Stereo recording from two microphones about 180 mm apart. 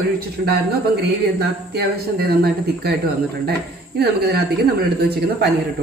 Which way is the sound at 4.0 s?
60° right (ahead or behind).